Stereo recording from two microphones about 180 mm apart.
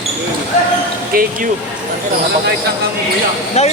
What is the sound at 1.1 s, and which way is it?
Speech, 55° right (ahead or behind).